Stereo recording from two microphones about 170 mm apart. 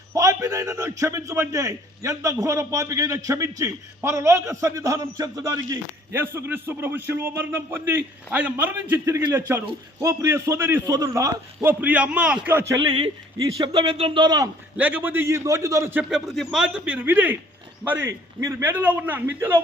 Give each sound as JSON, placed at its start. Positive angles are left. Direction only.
{"t": 0.1, "sound": "a man's voice", "side_deg": -20}
{"t": 14.8, "sound": "a man's voice", "side_deg": -10}